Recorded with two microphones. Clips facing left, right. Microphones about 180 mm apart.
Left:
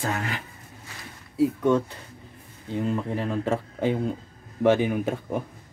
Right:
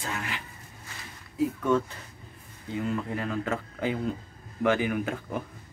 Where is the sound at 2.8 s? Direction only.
30° left (ahead or behind).